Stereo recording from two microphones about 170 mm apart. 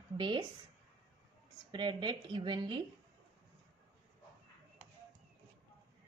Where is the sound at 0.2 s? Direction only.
30° right (ahead or behind).